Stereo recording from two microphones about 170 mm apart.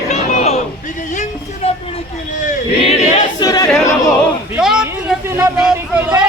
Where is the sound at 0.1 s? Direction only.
40° left (ahead or behind).